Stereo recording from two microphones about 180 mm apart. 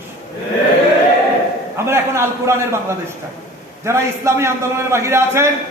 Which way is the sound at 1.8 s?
15° right (ahead or behind).